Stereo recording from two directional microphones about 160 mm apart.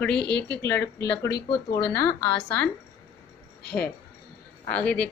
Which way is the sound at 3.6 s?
80° left.